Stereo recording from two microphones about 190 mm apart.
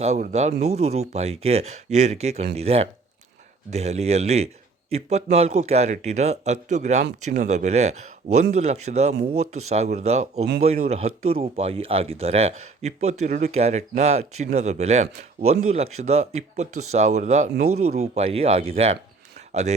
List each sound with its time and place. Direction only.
0.0 s speech: 40° right (ahead or behind)